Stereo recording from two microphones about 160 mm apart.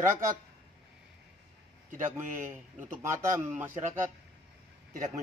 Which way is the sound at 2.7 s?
15° right (ahead or behind).